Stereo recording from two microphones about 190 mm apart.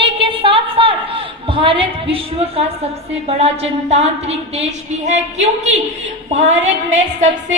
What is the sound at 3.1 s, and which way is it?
A woman's voice, 30° right (ahead or behind).